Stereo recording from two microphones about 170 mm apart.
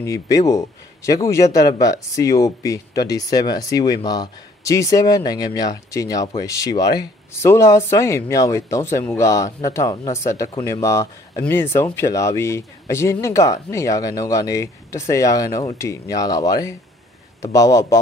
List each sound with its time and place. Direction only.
0.0 s speech: 20° left (ahead or behind)